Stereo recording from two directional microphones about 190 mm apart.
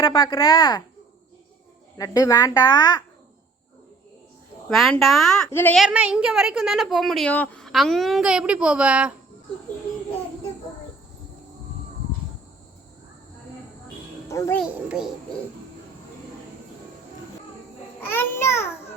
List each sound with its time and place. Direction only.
0.0 s speech: 25° left (ahead or behind)
2.0 s speech: 15° left (ahead or behind)
4.7 s a woman's voice: centre (ahead or behind)
5.7 s a woman's voice: 5° right (ahead or behind)
14.3 s a child's voice: 15° left (ahead or behind)
14.6 s a woman's voice: centre (ahead or behind)
18.0 s speech: 10° left (ahead or behind)